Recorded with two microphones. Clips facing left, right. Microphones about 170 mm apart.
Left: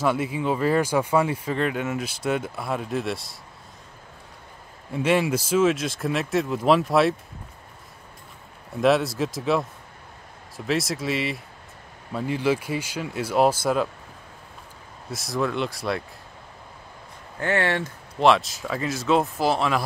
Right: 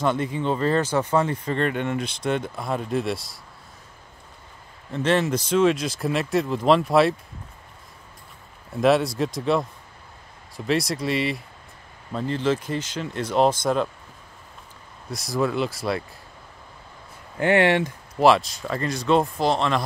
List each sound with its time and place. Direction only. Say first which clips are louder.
0.0 s speech: even; 5° left (ahead or behind)
4.9 s speech: even; 10° left (ahead or behind)
8.7 s speech: right 1 dB; centre (ahead or behind)
10.7 s speech: right 2 dB; centre (ahead or behind)
15.0 s speech: right 2 dB; centre (ahead or behind)
17.4 s speech: right 5 dB; 15° right (ahead or behind)
18.2 s speech: right 1 dB; centre (ahead or behind)